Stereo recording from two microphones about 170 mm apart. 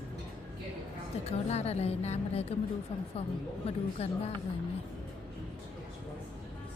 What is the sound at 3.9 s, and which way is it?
Speech, 35° left (ahead or behind).